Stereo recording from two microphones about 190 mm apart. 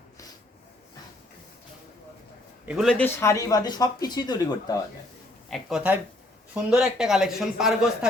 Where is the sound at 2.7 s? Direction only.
Centre (ahead or behind); by 4.7 s 20° left (ahead or behind).